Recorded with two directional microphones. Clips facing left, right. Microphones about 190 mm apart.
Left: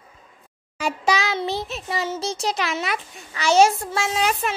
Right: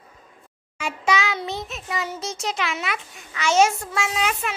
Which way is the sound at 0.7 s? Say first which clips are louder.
Left 1 dB; 35° left (ahead or behind).